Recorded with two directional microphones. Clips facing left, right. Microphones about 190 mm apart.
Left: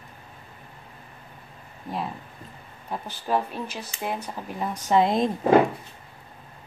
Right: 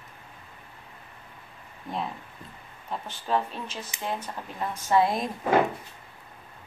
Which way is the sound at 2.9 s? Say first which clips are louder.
Left 2 dB; 10° left (ahead or behind).